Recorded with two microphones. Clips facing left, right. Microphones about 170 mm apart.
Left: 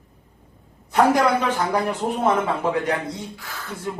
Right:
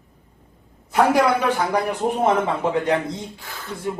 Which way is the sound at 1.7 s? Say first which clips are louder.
Right 1 dB; 15° right (ahead or behind).